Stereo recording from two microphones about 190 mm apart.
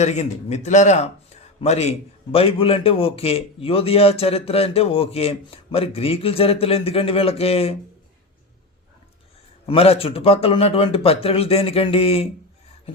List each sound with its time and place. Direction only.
0.0 s a man's voice: 35° left (ahead or behind)
9.6 s a man's voice: 30° left (ahead or behind)